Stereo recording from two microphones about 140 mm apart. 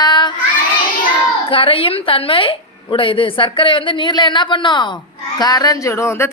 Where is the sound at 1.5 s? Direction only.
40° left (ahead or behind).